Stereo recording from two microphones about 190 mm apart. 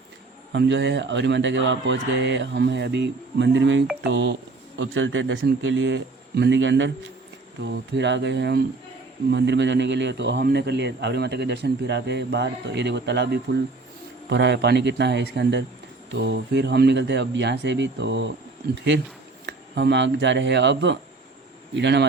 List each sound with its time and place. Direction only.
0.5 s a man's voice: 65° right (ahead or behind)